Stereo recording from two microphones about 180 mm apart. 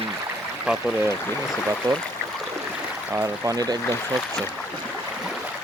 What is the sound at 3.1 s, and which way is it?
Speech, 15° right (ahead or behind).